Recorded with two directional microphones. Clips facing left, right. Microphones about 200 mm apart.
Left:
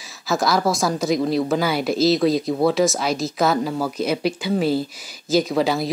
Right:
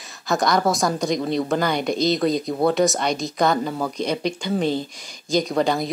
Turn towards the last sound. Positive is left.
turn(degrees=5)  # may be behind; listen again after turning